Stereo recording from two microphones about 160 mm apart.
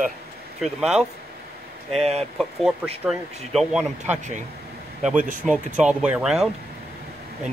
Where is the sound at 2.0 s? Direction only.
40° right (ahead or behind).